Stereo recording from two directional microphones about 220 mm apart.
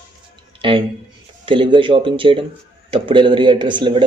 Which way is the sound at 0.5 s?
25° right (ahead or behind).